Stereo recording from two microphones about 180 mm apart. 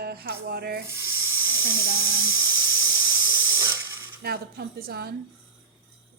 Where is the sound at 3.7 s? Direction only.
15° right (ahead or behind).